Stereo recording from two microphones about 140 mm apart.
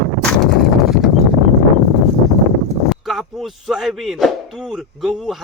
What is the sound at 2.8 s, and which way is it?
Speech, centre (ahead or behind).